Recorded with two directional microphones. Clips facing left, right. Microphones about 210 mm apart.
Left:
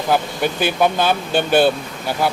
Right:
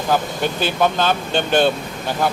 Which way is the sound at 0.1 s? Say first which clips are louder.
Left 1 dB; 10° left (ahead or behind).